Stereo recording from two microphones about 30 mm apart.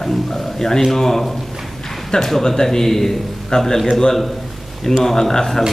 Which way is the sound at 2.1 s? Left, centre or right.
Left.